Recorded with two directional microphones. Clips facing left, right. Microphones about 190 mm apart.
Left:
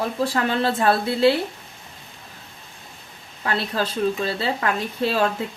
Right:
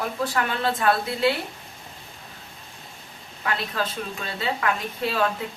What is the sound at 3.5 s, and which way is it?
A woman's voice, 35° left (ahead or behind).